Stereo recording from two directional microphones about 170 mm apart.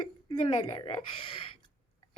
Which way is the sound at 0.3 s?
30° left (ahead or behind).